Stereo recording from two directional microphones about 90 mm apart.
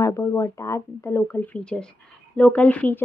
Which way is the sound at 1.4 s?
15° left (ahead or behind).